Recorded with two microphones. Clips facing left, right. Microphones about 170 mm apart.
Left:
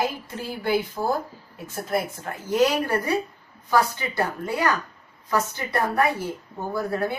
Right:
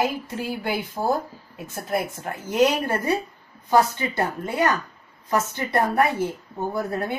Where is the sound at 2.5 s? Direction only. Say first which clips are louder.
Even; 20° right (ahead or behind).